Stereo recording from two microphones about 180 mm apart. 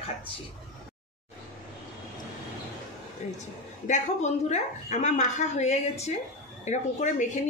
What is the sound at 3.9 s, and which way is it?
Speech, 40° left (ahead or behind).